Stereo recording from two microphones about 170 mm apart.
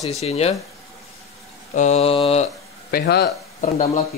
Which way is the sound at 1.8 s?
40° left (ahead or behind).